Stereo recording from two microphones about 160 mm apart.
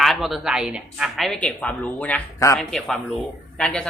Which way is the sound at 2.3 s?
20° left (ahead or behind).